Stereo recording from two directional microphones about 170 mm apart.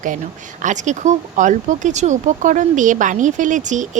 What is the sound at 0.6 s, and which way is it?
Speech, 45° right (ahead or behind).